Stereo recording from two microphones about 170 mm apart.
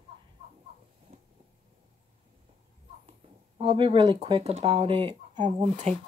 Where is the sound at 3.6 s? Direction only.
30° right (ahead or behind).